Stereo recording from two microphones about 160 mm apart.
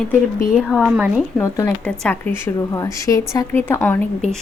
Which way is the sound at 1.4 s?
20° left (ahead or behind).